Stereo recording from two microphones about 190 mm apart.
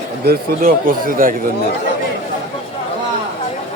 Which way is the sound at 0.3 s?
45° right (ahead or behind).